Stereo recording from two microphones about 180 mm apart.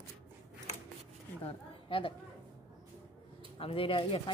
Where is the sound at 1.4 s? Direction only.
30° left (ahead or behind).